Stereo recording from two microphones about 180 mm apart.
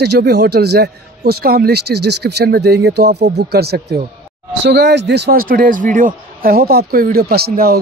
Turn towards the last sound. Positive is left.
turn(degrees=-60)  # may be behind; listen again after turning